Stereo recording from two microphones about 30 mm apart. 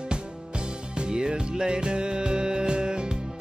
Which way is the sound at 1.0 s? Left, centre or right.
Right.